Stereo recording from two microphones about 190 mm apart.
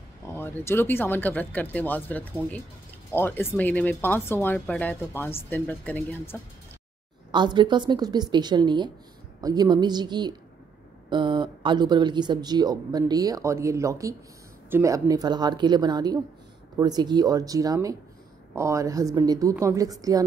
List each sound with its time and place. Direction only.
0.4 s speech: 10° left (ahead or behind)
7.2 s a woman's voice: 25° right (ahead or behind)